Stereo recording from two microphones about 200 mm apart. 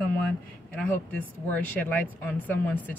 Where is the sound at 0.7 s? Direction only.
10° left (ahead or behind).